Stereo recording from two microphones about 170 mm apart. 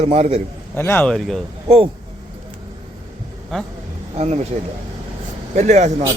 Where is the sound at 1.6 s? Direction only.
35° right (ahead or behind).